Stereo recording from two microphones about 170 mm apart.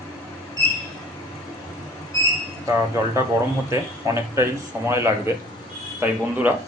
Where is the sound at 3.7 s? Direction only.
15° right (ahead or behind).